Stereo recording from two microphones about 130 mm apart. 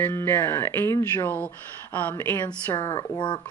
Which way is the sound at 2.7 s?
40° left (ahead or behind).